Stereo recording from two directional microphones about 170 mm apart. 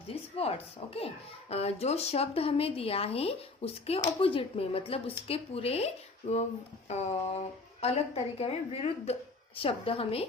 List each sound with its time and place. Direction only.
0.3 s speech: 35° left (ahead or behind)